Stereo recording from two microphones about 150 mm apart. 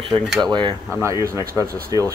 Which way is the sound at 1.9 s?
25° left (ahead or behind).